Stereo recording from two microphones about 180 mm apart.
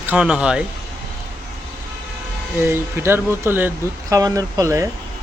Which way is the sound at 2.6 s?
10° right (ahead or behind).